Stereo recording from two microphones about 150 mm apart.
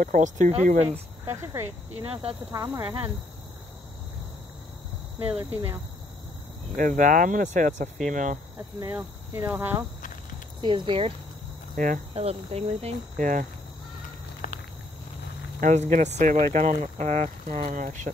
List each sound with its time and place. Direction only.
0.0 s speech: 60° right (ahead or behind)
0.5 s speech: 50° right (ahead or behind)
0.8 s speech: 15° right (ahead or behind)
5.4 s speech: 35° right (ahead or behind)
6.8 s speech: 60° right (ahead or behind)
8.9 s speech: 15° right (ahead or behind)
10.6 s speech: 35° right (ahead or behind)
11.7 s cricket: 65° right (ahead or behind)
12.1 s speech: 40° right (ahead or behind)
13.2 s speech: 65° right (ahead or behind)
14.4 s a sound: 60° left (ahead or behind)
15.6 s speech: 50° right (ahead or behind)
17.6 s speech: 65° right (ahead or behind)